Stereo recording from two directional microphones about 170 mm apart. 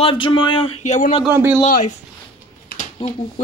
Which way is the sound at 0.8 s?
45° left (ahead or behind).